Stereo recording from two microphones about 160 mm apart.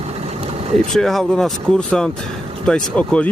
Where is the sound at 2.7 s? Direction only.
5° left (ahead or behind).